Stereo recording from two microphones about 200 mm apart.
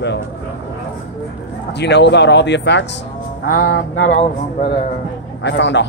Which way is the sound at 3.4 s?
45° left (ahead or behind).